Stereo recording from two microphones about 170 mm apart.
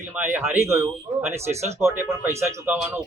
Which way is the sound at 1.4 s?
40° right (ahead or behind).